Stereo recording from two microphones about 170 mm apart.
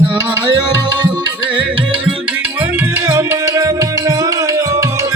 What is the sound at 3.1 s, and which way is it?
Music, 20° right (ahead or behind).